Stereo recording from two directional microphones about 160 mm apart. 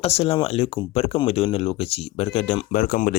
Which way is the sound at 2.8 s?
60° left (ahead or behind).